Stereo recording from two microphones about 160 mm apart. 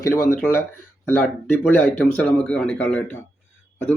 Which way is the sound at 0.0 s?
15° left (ahead or behind).